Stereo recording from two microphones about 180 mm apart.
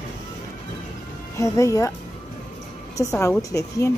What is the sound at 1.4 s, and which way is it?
Speech, 15° left (ahead or behind).